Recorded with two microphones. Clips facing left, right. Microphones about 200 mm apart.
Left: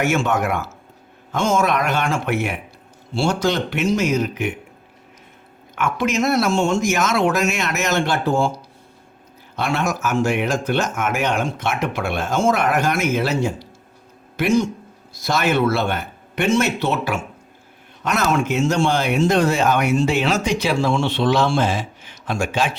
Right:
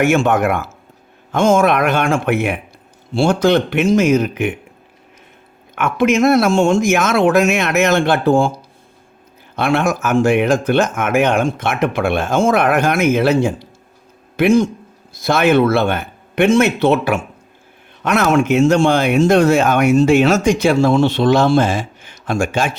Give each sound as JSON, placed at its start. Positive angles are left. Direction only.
{"t": 0.0, "sound": "speech", "side_deg": -55}
{"t": 5.7, "sound": "speech", "side_deg": -55}
{"t": 9.6, "sound": "speech", "side_deg": -55}